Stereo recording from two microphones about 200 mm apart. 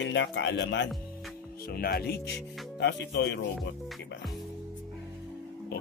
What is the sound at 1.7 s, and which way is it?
Speech, 50° left (ahead or behind).